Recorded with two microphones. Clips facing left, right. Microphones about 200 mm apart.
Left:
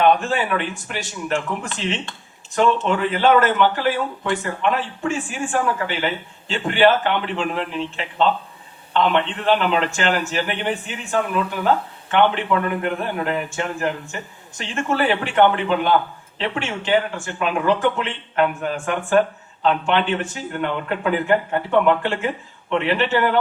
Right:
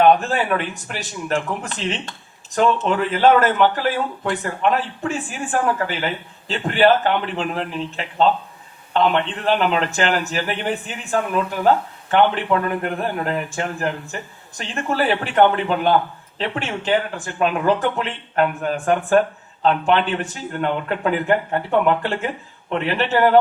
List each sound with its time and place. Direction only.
0.0 s speech: 40° right (ahead or behind)
12.8 s a man's voice: 50° right (ahead or behind)